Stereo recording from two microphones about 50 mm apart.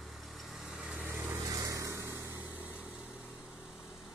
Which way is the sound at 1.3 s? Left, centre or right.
Right.